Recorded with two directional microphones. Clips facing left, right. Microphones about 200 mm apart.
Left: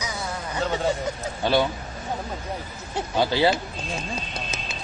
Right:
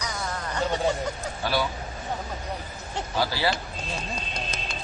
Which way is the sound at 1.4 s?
25° left (ahead or behind).